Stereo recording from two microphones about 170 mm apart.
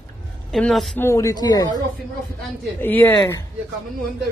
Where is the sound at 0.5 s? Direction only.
Centre (ahead or behind).